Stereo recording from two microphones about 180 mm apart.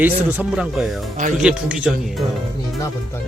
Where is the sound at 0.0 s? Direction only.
5° right (ahead or behind).